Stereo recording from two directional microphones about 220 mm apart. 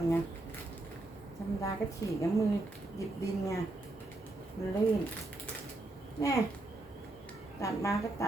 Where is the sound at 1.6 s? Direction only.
15° left (ahead or behind).